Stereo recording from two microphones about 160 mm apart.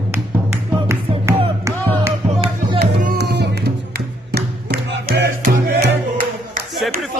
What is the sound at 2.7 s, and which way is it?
Music, 85° right.